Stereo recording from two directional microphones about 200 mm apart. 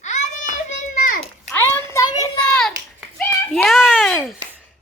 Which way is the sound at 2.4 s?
5° left (ahead or behind).